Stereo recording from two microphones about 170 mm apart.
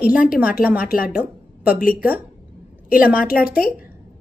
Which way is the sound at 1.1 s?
10° right (ahead or behind).